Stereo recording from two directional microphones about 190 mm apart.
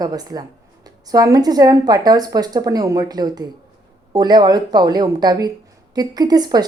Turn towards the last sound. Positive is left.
turn(degrees=-20)  # may be behind; listen again after turning